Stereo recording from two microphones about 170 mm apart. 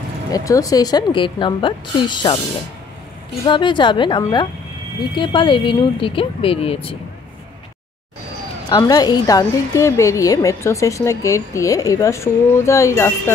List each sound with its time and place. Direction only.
0.3 s a woman's voice: 20° left (ahead or behind)
3.4 s a woman's voice: 30° left (ahead or behind)
8.6 s a woman's voice: 25° left (ahead or behind)